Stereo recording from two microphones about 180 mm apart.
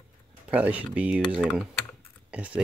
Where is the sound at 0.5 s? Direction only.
10° right (ahead or behind).